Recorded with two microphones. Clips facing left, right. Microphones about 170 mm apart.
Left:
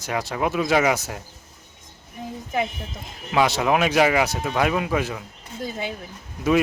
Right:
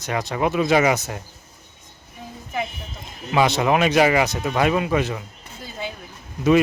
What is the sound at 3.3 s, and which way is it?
Speech, 5° left (ahead or behind).